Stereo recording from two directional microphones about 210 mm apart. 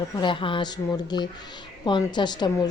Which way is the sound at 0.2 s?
25° left (ahead or behind).